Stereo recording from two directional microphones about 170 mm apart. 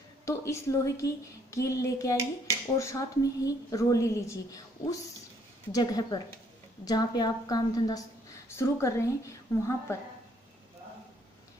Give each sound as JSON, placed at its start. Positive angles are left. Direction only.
{"t": 0.2, "sound": "a woman's voice", "side_deg": 15}